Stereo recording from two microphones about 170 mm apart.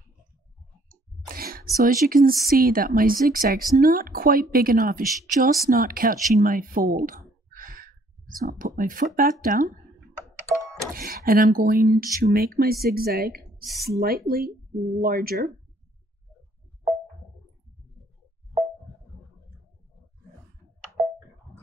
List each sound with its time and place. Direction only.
1.3 s a woman's voice: 60° right (ahead or behind)
11.0 s a woman's voice: 60° right (ahead or behind)